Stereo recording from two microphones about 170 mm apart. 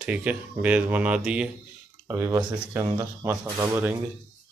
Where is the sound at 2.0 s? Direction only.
15° right (ahead or behind).